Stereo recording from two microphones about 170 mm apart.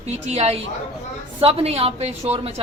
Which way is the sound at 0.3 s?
40° right (ahead or behind).